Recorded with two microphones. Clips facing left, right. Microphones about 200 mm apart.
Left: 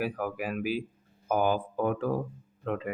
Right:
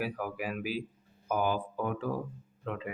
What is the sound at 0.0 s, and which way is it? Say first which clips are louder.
Speech: left 3 dB; 50° left (ahead or behind).